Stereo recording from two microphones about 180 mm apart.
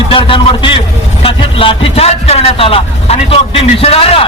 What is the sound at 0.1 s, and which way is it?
A man's voice, 30° left (ahead or behind).